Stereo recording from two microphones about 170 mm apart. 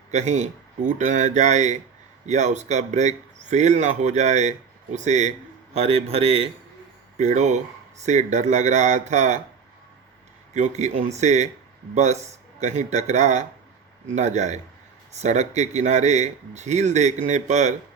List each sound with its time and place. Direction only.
0.1 s a man's voice: 40° right (ahead or behind)
10.5 s speech: 45° right (ahead or behind)